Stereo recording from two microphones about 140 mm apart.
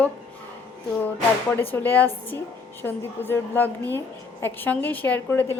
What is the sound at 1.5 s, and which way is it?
A woman's voice, 15° left (ahead or behind).